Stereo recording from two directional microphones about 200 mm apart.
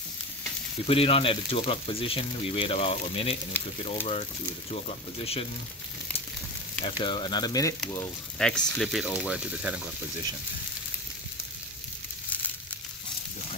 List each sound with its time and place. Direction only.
0.8 s speech: 30° left (ahead or behind)
6.8 s speech: 25° left (ahead or behind)
7.9 s speech: 5° left (ahead or behind)